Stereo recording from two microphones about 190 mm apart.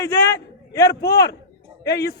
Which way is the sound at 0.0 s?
20° left (ahead or behind).